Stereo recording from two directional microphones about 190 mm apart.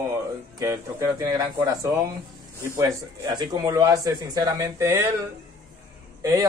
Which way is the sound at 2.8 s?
20° right (ahead or behind).